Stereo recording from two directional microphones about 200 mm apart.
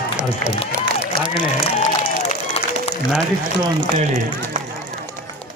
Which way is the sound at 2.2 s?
35° left (ahead or behind).